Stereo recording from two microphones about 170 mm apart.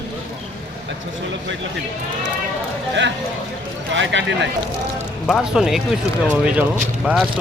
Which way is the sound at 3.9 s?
90° right.